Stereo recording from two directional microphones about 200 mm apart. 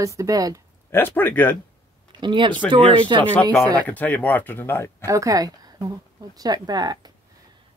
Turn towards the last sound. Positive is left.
turn(degrees=-20)  # may be behind; listen again after turning